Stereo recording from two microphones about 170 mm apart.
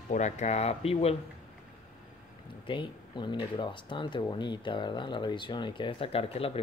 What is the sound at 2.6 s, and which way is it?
Speech, 30° left (ahead or behind).